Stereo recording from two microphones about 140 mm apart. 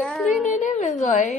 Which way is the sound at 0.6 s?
60° left (ahead or behind).